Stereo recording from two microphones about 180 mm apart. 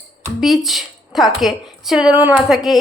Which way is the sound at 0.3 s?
Centre (ahead or behind).